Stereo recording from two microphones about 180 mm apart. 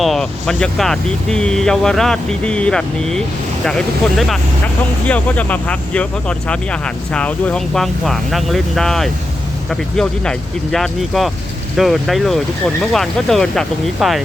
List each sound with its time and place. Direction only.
0.0 s speech: centre (ahead or behind)